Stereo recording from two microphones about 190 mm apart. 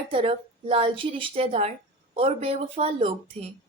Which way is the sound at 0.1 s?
30° right (ahead or behind).